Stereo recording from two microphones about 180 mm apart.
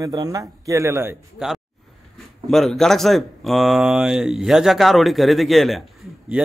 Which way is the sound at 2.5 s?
Centre (ahead or behind).